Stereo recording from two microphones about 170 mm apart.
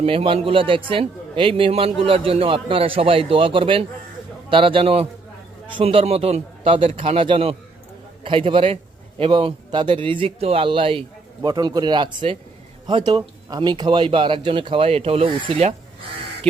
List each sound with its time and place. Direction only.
0.0 s a man's voice: 35° right (ahead or behind)